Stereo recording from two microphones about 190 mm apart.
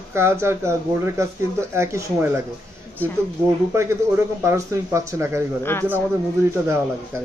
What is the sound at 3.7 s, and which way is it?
Speech, 15° right (ahead or behind).